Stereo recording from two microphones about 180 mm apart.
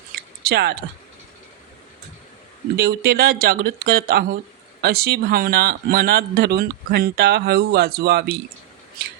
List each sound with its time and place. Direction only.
0.4 s speech: 60° right (ahead or behind)
2.7 s speech: 60° right (ahead or behind)